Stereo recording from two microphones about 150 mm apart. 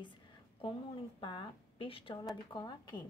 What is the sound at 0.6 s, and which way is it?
A woman's voice, 35° left (ahead or behind).